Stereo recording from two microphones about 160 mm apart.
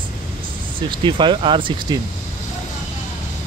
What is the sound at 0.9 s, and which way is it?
Speech, 30° right (ahead or behind).